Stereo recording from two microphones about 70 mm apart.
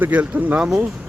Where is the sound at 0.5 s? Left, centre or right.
Centre.